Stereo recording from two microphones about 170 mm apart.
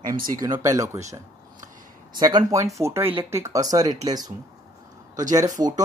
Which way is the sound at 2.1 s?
25° right (ahead or behind).